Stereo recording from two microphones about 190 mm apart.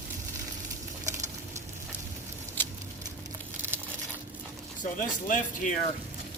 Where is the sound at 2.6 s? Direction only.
10° left (ahead or behind).